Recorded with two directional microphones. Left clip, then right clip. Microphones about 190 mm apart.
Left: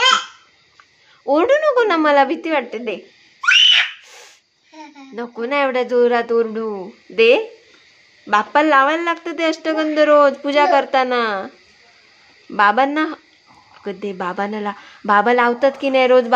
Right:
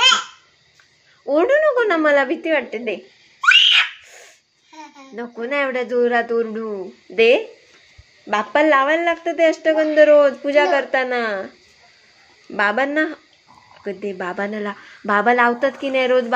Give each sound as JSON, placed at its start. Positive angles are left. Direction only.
{"t": 1.2, "sound": "a woman's voice", "side_deg": 10}
{"t": 3.3, "sound": "a sound", "side_deg": 20}
{"t": 5.2, "sound": "a woman's voice", "side_deg": 5}
{"t": 12.5, "sound": "a woman's voice", "side_deg": 5}